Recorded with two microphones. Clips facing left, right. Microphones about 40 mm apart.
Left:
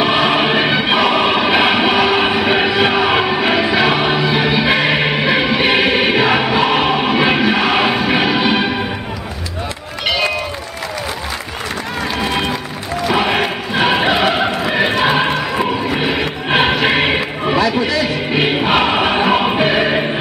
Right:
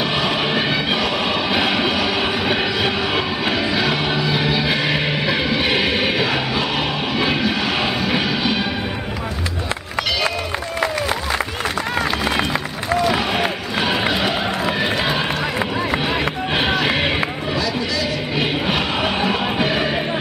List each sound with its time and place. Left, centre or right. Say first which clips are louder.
0.0 s music: left 6 dB; left
13.1 s music: left 4 dB; left
14.6 s a sound: left 5 dB; left
16.0 s music: left 3 dB; left